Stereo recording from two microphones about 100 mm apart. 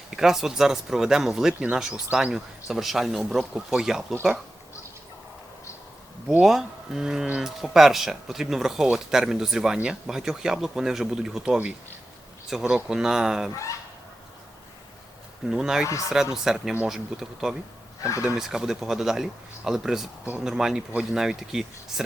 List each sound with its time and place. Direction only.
0.1 s speech: 5° right (ahead or behind)
6.4 s speech: 5° right (ahead or behind)
13.5 s speech: 30° left (ahead or behind)
15.4 s speech: 5° right (ahead or behind)
18.0 s speech: 30° left (ahead or behind)
18.3 s speech: 5° right (ahead or behind)
20.2 s speech: 15° right (ahead or behind)
20.5 s speech: 5° right (ahead or behind)